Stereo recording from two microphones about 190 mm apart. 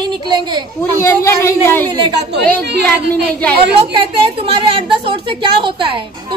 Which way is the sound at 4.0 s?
30° right (ahead or behind).